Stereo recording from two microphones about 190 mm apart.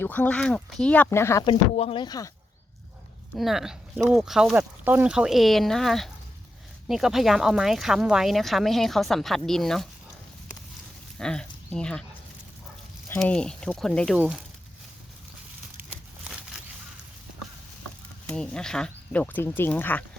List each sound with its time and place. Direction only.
0.0 s speech: 10° left (ahead or behind)
1.5 s speech: 30° left (ahead or behind)
3.3 s speech: centre (ahead or behind)
11.2 s speech: 5° left (ahead or behind)
13.1 s speech: 5° left (ahead or behind)
15.8 s a sound: 5° right (ahead or behind)
18.3 s speech: 5° left (ahead or behind)